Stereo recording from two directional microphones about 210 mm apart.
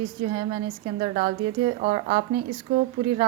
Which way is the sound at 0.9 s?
30° right (ahead or behind).